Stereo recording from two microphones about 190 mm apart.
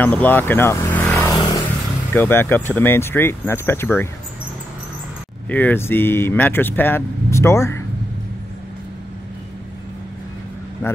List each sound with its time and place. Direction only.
0.0 s speech: 10° left (ahead or behind)
1.3 s vehicle: 20° left (ahead or behind)
2.1 s speech: 10° left (ahead or behind)
5.5 s speech: 10° left (ahead or behind)